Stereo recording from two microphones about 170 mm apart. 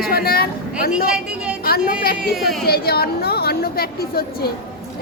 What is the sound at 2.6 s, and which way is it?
A woman's voice, 65° left (ahead or behind).